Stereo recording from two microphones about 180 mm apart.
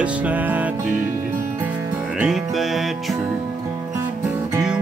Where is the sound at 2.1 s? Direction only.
Centre (ahead or behind).